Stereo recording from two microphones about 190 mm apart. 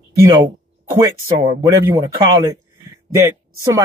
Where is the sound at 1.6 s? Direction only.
15° right (ahead or behind).